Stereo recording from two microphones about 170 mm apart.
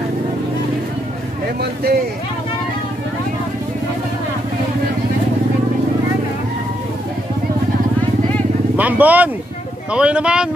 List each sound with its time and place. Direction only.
1.6 s speech: 65° right (ahead or behind)
8.7 s speech: 10° right (ahead or behind)